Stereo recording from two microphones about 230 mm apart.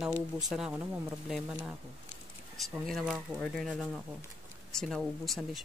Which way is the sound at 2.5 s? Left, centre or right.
Centre.